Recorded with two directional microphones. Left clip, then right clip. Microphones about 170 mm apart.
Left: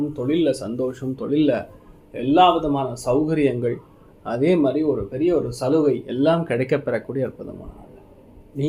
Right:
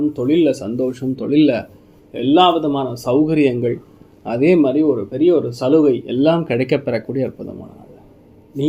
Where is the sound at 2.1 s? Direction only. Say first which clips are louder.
Right 3 dB; 40° right (ahead or behind).